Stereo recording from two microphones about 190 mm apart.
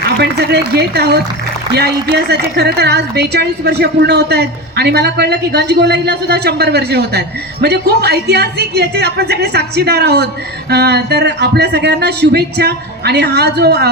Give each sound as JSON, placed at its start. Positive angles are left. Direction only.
{"t": 0.2, "sound": "a woman's voice", "side_deg": -60}